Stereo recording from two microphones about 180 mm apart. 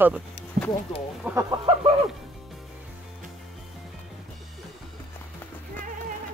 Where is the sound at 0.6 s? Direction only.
45° right (ahead or behind).